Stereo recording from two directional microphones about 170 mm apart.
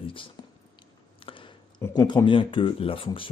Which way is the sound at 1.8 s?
25° left (ahead or behind).